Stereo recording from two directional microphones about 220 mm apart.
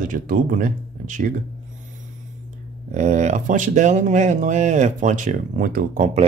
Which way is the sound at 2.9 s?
35° right (ahead or behind).